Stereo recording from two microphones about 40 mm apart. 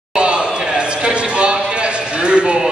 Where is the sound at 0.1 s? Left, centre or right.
Right.